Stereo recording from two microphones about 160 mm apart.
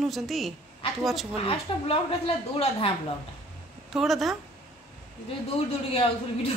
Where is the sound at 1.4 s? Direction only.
35° left (ahead or behind).